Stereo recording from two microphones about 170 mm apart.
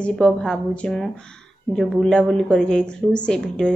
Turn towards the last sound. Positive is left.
turn(degrees=5)  # may be behind; listen again after turning